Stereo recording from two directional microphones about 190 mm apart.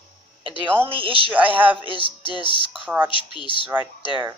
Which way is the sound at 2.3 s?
25° left (ahead or behind).